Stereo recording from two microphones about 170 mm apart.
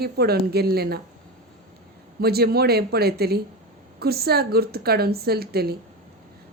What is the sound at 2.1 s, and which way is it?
A woman's voice, 70° right (ahead or behind).